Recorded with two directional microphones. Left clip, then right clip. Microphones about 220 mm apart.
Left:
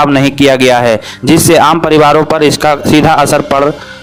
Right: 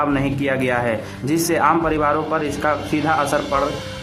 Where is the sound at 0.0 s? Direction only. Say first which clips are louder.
Left 13 dB; 50° left (ahead or behind).